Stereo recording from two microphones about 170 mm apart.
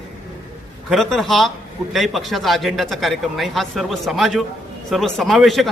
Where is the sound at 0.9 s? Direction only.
Centre (ahead or behind).